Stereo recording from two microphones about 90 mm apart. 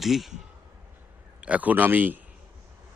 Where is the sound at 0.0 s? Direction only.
Centre (ahead or behind).